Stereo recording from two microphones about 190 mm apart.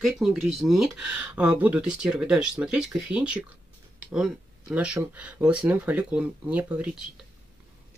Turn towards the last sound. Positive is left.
turn(degrees=-5)  # may be behind; listen again after turning